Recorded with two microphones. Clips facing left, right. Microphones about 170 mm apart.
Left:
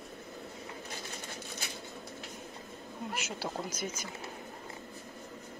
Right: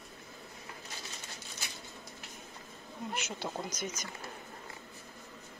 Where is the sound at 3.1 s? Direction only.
5° left (ahead or behind).